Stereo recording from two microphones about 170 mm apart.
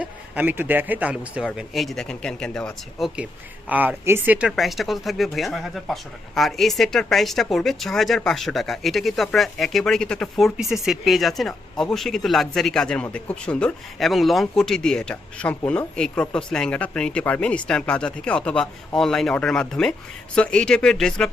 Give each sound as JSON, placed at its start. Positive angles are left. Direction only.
{"t": 0.0, "sound": "a man's voice", "side_deg": -10}
{"t": 3.7, "sound": "speech", "side_deg": -10}